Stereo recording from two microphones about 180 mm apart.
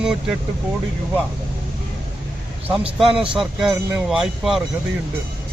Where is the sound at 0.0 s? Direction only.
5° right (ahead or behind).